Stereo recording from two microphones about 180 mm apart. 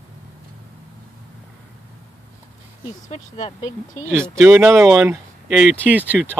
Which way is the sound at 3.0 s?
35° left (ahead or behind).